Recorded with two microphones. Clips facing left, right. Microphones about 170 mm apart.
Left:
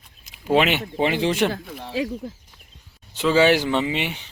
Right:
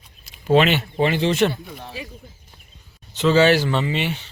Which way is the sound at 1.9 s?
90° left.